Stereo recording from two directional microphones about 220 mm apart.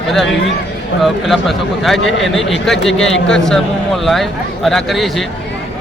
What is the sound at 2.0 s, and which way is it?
Speech, 55° left (ahead or behind).